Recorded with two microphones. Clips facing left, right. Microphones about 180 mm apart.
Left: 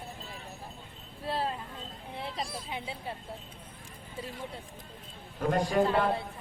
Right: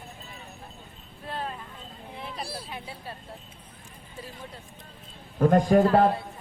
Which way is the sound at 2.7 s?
20° left (ahead or behind).